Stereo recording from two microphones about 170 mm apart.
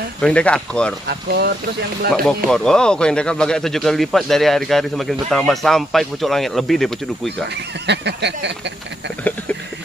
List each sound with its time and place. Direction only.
0.2 s speech: 5° left (ahead or behind)
1.0 s speech: 70° right (ahead or behind)
2.2 s speech: 5° left (ahead or behind)
7.8 s speech: 85° right